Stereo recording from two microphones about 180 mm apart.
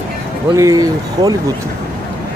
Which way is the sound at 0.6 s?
20° right (ahead or behind).